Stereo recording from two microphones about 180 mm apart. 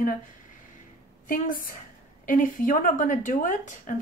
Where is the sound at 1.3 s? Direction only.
50° left (ahead or behind).